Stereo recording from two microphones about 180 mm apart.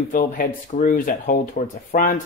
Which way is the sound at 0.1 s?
55° left (ahead or behind).